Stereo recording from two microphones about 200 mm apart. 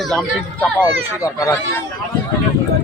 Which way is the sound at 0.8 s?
15° left (ahead or behind).